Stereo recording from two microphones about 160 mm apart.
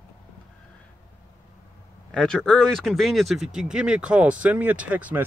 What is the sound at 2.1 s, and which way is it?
Speech, 5° left (ahead or behind).